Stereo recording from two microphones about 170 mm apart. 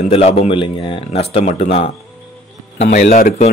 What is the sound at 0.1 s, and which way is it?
A man's voice, 35° left (ahead or behind).